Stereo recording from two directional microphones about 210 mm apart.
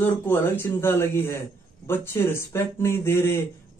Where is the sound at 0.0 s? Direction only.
10° left (ahead or behind).